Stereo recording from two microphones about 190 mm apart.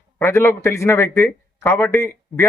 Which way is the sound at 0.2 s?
15° left (ahead or behind).